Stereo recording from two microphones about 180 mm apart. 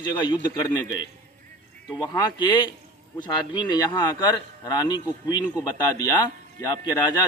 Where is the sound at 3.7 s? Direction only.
20° left (ahead or behind).